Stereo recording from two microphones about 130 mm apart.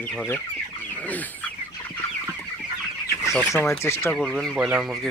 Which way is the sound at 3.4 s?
20° left (ahead or behind).